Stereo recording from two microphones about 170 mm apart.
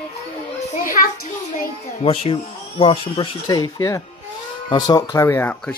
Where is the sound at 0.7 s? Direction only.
55° left (ahead or behind).